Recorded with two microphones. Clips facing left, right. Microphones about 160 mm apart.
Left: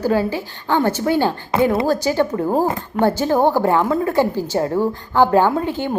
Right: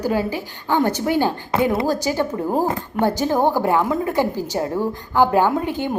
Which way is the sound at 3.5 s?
15° right (ahead or behind).